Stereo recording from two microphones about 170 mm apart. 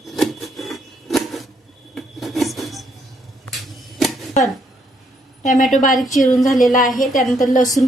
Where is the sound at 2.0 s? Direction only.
Centre (ahead or behind).